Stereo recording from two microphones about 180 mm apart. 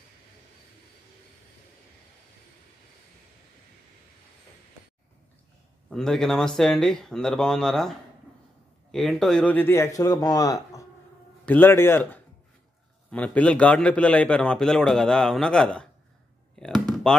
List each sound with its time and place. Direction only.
5.9 s a man's voice: 5° left (ahead or behind)
8.9 s a man's voice: centre (ahead or behind)
16.5 s a sound: centre (ahead or behind)